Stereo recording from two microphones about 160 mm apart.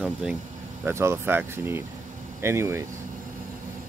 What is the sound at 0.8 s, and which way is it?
Speech, 15° right (ahead or behind).